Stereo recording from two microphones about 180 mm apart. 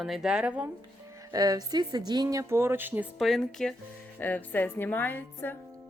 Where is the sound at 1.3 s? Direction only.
20° right (ahead or behind).